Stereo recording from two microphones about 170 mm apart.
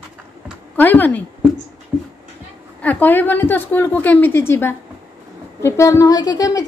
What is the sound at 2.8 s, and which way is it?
A woman's voice, 10° left (ahead or behind).